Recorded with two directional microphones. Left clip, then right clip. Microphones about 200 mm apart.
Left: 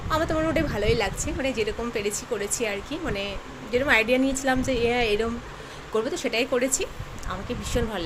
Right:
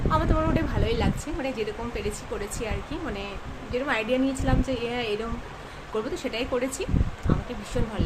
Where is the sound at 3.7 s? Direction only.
10° left (ahead or behind).